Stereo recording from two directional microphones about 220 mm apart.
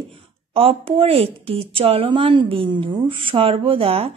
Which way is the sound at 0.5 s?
25° right (ahead or behind).